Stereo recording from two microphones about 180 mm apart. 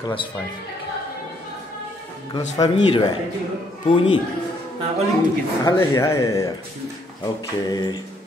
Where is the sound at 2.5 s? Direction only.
20° left (ahead or behind).